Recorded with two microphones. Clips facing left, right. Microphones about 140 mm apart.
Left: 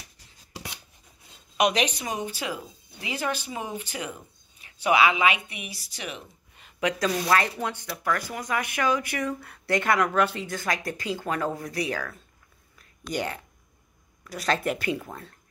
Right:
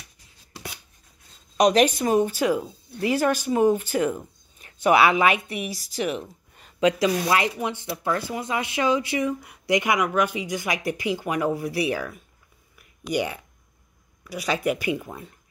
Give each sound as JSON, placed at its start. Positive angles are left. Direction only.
{"t": 1.6, "sound": "a woman's voice", "side_deg": -45}
{"t": 6.0, "sound": "a sound", "side_deg": -45}
{"t": 6.8, "sound": "a woman's voice", "side_deg": -15}
{"t": 12.7, "sound": "whispering", "side_deg": -10}
{"t": 14.2, "sound": "a woman's voice", "side_deg": -5}